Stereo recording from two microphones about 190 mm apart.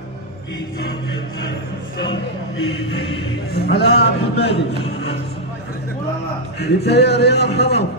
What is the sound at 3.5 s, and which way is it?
A man's voice, 60° left (ahead or behind).